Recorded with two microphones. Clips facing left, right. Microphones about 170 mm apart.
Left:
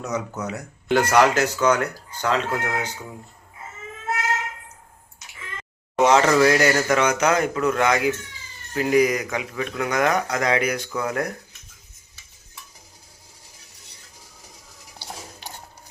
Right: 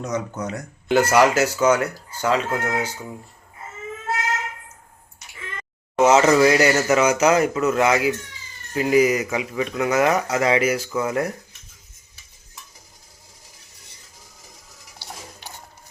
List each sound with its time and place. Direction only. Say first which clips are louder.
0.0 s speech: right 1 dB; 5° left (ahead or behind)
6.0 s speech: right 2 dB; 5° right (ahead or behind)